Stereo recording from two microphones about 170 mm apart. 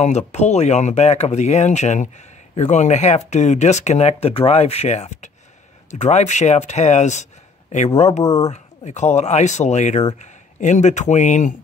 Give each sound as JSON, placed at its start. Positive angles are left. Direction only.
{"t": 0.0, "sound": "speech", "side_deg": 40}
{"t": 8.2, "sound": "speech", "side_deg": 20}
{"t": 8.5, "sound": "speech", "side_deg": 45}